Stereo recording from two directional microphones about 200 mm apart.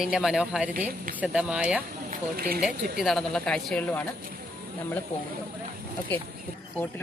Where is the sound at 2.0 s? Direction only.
50° right (ahead or behind).